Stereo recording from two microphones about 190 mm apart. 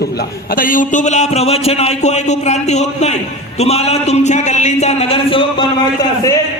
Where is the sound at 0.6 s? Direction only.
45° left (ahead or behind); by 5.7 s 30° left (ahead or behind).